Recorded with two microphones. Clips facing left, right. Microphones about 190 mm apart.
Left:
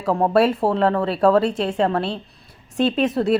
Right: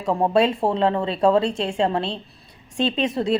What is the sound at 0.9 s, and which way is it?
Speech, 25° right (ahead or behind).